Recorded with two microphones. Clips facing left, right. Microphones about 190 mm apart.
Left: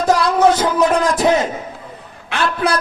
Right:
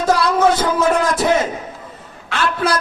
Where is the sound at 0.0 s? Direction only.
15° left (ahead or behind).